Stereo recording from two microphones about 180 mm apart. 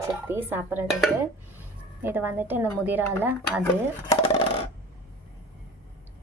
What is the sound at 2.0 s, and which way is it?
Speech, 10° right (ahead or behind).